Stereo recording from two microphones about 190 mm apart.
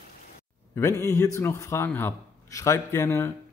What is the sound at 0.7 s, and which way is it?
A man's voice, 15° left (ahead or behind).